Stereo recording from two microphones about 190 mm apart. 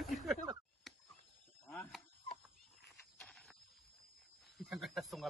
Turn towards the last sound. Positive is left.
turn(degrees=0)  # may be behind; listen again after turning